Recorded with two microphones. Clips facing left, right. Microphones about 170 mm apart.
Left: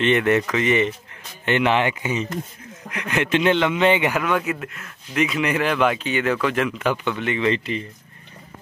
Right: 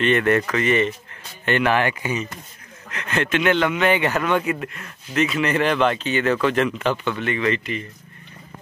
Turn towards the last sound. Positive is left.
turn(degrees=30)  # may be behind; listen again after turning